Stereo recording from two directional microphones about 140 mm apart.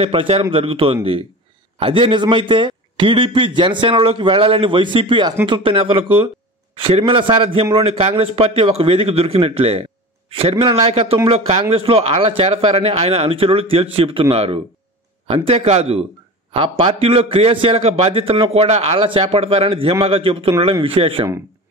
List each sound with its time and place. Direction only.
0.0 s a man's voice: 45° right (ahead or behind)